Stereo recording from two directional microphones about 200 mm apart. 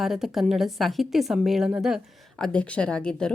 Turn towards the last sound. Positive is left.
turn(degrees=5)  # may be behind; listen again after turning